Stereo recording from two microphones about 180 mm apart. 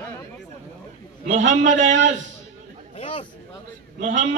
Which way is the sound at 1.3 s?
40° right (ahead or behind).